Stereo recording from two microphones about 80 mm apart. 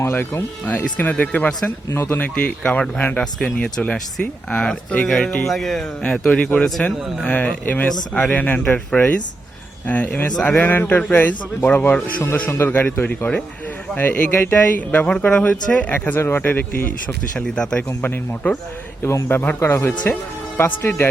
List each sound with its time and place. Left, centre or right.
0.0 s speech: left
1.9 s speech: left; by 5.8 s centre
6.0 s speech: centre
12.5 s speech: left
17.3 s speech: centre
17.8 s speech: left